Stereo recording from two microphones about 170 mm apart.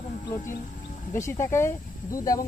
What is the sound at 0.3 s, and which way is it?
Speech, 50° left (ahead or behind).